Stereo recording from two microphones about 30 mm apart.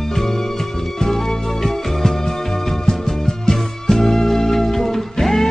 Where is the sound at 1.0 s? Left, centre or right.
Centre.